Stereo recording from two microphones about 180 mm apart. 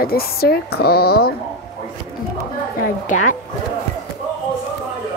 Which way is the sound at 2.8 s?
45° left (ahead or behind).